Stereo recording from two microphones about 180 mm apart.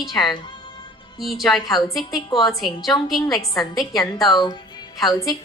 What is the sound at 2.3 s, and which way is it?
Speech, 20° left (ahead or behind).